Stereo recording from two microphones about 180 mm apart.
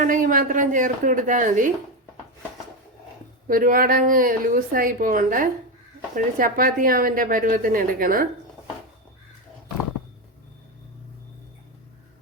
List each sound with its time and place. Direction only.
0.0 s a woman's voice: 50° right (ahead or behind)
3.4 s a woman's voice: 50° right (ahead or behind)